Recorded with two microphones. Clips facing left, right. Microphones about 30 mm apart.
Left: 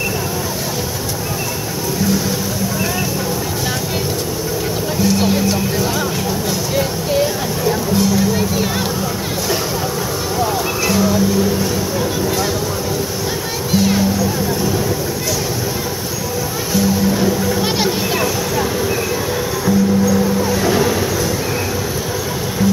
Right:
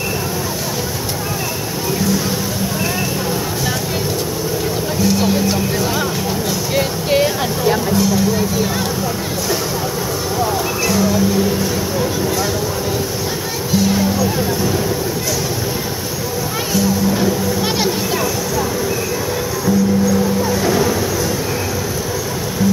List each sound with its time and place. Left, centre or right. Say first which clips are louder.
6.7 s a sound: right 3 dB; right
10.4 s speech: even; centre
17.2 s children playing: left 1 dB; centre
20.4 s ocean: even; centre